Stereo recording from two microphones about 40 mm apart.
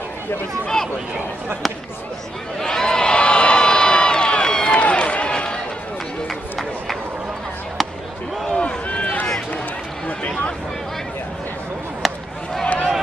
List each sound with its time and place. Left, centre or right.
2.6 s a sound: centre
4.8 s run: left
8.5 s run: left
12.0 s chop: centre
12.6 s run: left